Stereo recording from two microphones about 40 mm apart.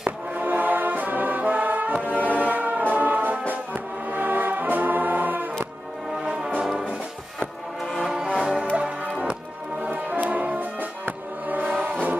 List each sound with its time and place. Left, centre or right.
0.3 s music: right
6.2 s brass instrument: right
7.3 s music: centre
8.7 s music: right
9.8 s music: right
11.8 s music: right